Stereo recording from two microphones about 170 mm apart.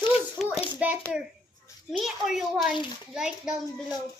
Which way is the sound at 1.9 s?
Centre (ahead or behind).